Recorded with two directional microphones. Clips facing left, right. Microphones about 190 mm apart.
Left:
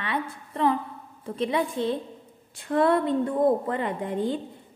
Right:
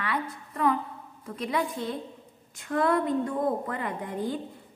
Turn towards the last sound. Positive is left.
turn(degrees=25)  # may be behind; listen again after turning